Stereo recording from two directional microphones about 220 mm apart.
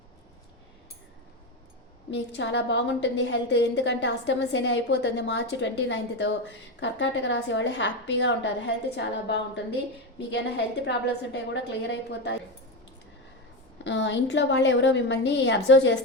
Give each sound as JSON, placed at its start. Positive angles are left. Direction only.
{"t": 2.0, "sound": "a woman's voice", "side_deg": 55}
{"t": 13.8, "sound": "a woman's voice", "side_deg": 55}